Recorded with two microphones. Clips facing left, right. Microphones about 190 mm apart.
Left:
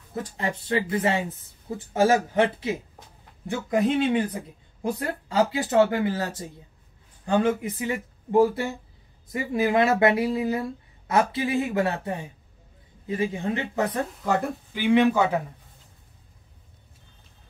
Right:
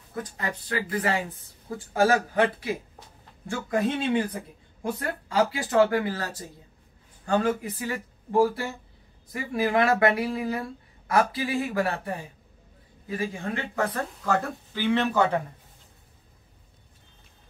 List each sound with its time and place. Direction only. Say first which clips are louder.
0.1 s speech: left 3 dB; 25° left (ahead or behind); by 15.4 s 10° left (ahead or behind)